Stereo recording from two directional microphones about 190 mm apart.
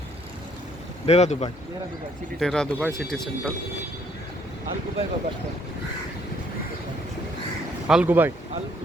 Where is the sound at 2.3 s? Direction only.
5° left (ahead or behind).